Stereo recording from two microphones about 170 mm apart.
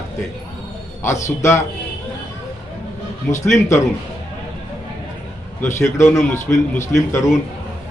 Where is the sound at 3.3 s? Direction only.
15° left (ahead or behind).